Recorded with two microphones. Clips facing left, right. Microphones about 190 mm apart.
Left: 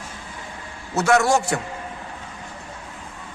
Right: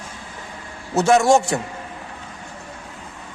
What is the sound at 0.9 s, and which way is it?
Speech, 25° right (ahead or behind).